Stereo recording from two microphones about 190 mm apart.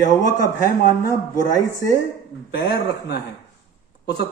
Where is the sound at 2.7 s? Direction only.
60° left (ahead or behind).